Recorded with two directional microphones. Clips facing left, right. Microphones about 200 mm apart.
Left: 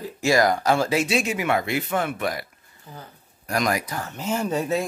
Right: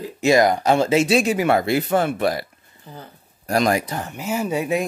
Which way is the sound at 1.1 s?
35° right (ahead or behind).